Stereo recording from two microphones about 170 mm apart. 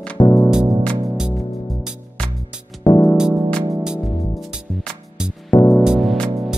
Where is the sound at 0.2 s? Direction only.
20° left (ahead or behind).